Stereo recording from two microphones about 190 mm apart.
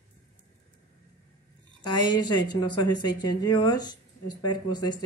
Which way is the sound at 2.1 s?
20° left (ahead or behind).